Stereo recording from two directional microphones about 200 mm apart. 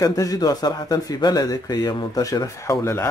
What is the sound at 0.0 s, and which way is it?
Speech, 15° left (ahead or behind).